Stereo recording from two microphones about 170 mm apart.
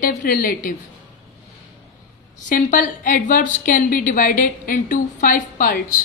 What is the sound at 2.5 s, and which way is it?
A woman's voice, 55° left (ahead or behind).